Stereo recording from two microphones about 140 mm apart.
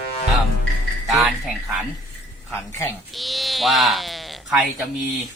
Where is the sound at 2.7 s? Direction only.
20° left (ahead or behind).